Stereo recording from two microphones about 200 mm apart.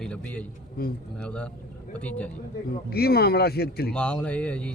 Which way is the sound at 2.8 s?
50° left (ahead or behind).